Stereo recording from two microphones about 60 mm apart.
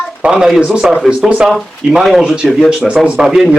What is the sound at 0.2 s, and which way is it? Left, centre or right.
Speech, centre.